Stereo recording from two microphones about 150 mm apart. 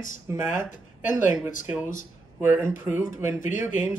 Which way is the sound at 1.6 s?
10° right (ahead or behind).